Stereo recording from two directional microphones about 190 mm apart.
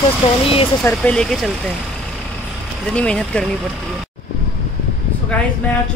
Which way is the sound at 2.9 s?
5° left (ahead or behind).